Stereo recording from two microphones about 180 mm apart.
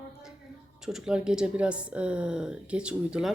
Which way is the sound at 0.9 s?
5° right (ahead or behind).